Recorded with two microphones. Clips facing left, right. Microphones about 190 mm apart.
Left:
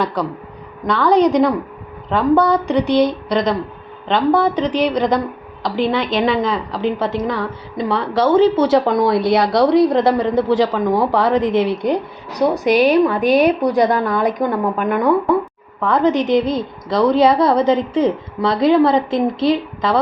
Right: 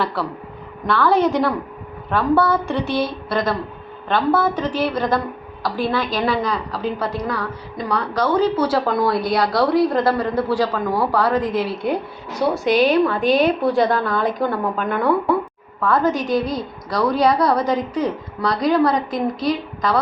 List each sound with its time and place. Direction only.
0.0 s a woman's voice: 15° left (ahead or behind)
13.1 s a woman's voice: centre (ahead or behind)
13.6 s a woman's voice: 20° left (ahead or behind)